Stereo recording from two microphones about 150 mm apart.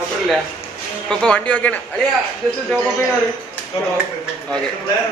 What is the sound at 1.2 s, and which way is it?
Speech, 5° left (ahead or behind).